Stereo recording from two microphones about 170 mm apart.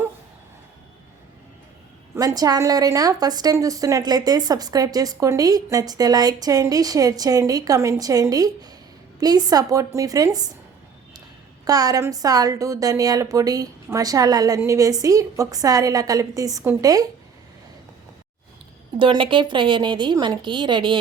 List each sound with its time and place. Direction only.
2.1 s a woman's voice: 20° right (ahead or behind)
11.6 s a woman's voice: 20° right (ahead or behind)
18.9 s a woman's voice: 30° right (ahead or behind)